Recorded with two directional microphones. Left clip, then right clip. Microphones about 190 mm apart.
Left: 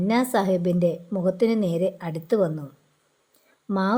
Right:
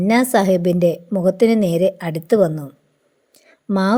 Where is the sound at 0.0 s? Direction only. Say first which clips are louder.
Right 7 dB; 20° right (ahead or behind).